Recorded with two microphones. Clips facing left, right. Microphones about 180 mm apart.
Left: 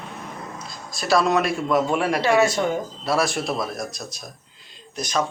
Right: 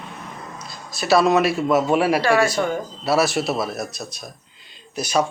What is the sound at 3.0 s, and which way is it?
A man's voice, 5° right (ahead or behind).